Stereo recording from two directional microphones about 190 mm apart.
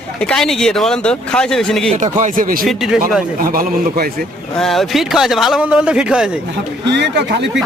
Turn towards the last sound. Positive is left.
turn(degrees=-65)  # may be behind; listen again after turning